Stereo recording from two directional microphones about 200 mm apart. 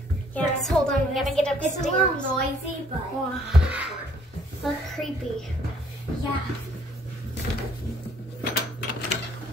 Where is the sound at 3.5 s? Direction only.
5° right (ahead or behind).